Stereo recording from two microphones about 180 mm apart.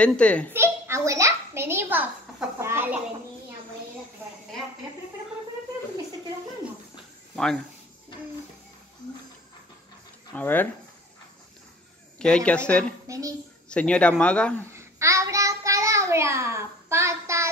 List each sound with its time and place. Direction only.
0.0 s speech: 5° left (ahead or behind)
0.5 s a sound: 15° right (ahead or behind)
7.3 s speech: 5° left (ahead or behind)
10.3 s speech: 10° left (ahead or behind)
12.2 s speech: 5° left (ahead or behind)
13.0 s a child's voice: 20° right (ahead or behind)
13.7 s speech: 5° left (ahead or behind)
14.7 s child singing: 15° right (ahead or behind)